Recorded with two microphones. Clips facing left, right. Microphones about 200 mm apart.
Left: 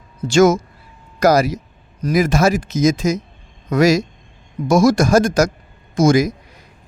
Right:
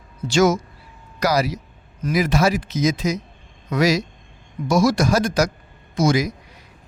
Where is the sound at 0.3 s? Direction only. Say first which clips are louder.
Left 5 dB; 50° left (ahead or behind).